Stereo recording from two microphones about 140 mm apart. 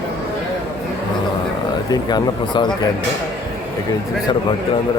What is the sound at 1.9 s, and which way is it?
Speech, 30° left (ahead or behind).